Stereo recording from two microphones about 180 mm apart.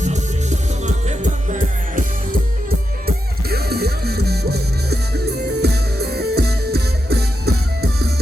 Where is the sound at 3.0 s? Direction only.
60° right (ahead or behind).